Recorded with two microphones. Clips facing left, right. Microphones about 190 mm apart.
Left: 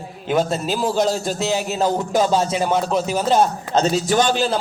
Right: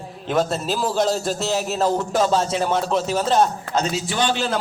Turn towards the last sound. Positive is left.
turn(degrees=40)  # may be behind; listen again after turning